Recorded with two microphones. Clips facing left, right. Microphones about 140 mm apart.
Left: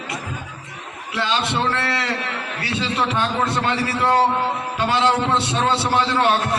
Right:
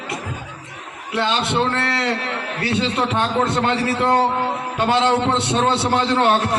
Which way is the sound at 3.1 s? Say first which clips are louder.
Right 2 dB; 25° right (ahead or behind).